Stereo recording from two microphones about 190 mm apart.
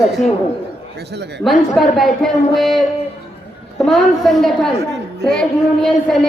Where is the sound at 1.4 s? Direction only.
Centre (ahead or behind).